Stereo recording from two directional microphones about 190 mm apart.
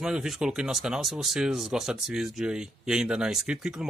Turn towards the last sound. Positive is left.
turn(degrees=-5)  # may be behind; listen again after turning